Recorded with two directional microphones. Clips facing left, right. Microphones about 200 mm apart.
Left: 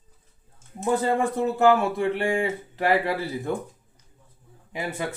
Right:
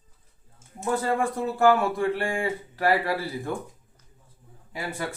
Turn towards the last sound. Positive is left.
turn(degrees=20)  # may be behind; listen again after turning